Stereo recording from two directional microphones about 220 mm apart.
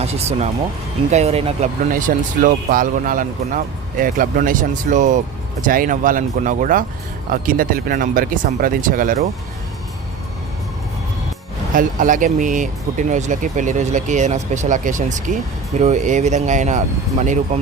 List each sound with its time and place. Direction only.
0.0 s speech: 30° right (ahead or behind)
1.9 s speech: 35° right (ahead or behind)
11.7 s speech: 35° right (ahead or behind)